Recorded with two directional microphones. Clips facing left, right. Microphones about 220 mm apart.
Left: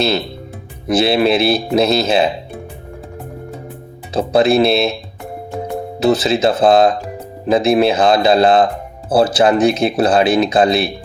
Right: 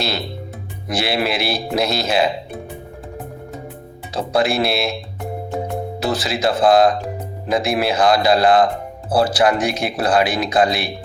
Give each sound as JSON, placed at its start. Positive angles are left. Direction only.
{"t": 0.9, "sound": "speech", "side_deg": 25}
{"t": 4.1, "sound": "speech", "side_deg": 25}
{"t": 6.0, "sound": "speech", "side_deg": 25}